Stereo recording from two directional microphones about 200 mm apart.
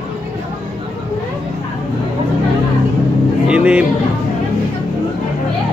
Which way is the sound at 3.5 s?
5° right (ahead or behind).